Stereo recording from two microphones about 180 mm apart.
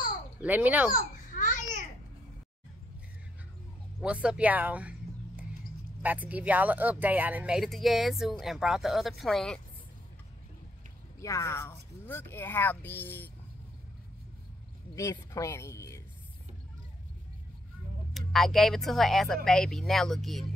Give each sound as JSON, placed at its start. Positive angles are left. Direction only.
{"t": 0.4, "sound": "speech", "side_deg": -10}
{"t": 0.9, "sound": "babbling", "side_deg": 45}
{"t": 4.0, "sound": "speech", "side_deg": -5}
{"t": 11.1, "sound": "speech", "side_deg": 15}
{"t": 15.0, "sound": "speech", "side_deg": 15}
{"t": 18.1, "sound": "speech", "side_deg": 0}